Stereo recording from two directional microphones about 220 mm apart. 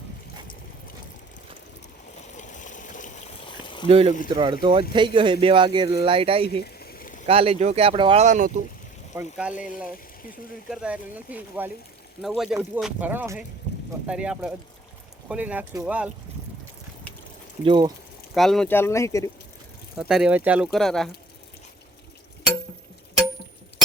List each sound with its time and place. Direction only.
2.3 s a sound: 35° left (ahead or behind)
3.8 s speech: 25° right (ahead or behind)
6.6 s a sound: 45° left (ahead or behind)
7.3 s speech: 25° right (ahead or behind)
9.1 s speech: 5° right (ahead or behind)
17.6 s speech: 20° right (ahead or behind)
18.3 s speech: centre (ahead or behind)
20.0 s speech: centre (ahead or behind)